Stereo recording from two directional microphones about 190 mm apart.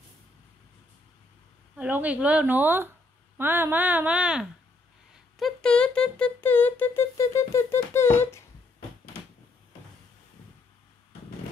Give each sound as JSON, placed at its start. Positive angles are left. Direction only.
{"t": 1.8, "sound": "speech", "side_deg": -10}